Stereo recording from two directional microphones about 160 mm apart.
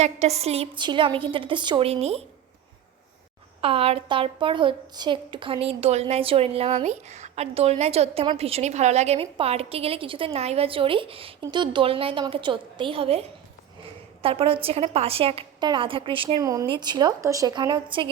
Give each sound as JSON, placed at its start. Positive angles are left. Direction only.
{"t": 0.0, "sound": "a woman's voice", "side_deg": -45}
{"t": 3.6, "sound": "a woman's voice", "side_deg": -35}